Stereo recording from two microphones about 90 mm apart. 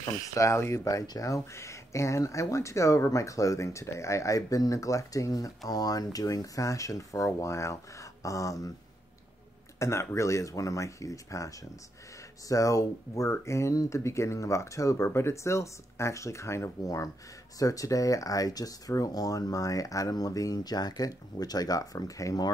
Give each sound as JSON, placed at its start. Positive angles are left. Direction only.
{"t": 0.0, "sound": "speech", "side_deg": 40}
{"t": 9.8, "sound": "speech", "side_deg": 30}